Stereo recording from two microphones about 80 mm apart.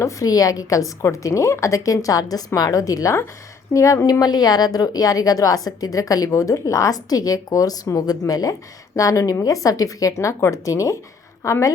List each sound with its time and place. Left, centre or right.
0.0 s a woman's voice: left